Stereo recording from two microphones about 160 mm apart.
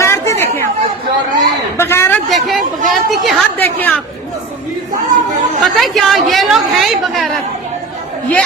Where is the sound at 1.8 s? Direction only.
15° left (ahead or behind).